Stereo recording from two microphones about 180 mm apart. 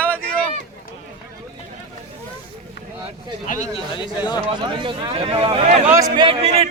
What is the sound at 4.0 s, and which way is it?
Chatter, 25° left (ahead or behind).